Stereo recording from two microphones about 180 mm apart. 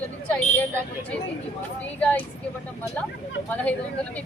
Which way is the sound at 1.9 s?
5° left (ahead or behind).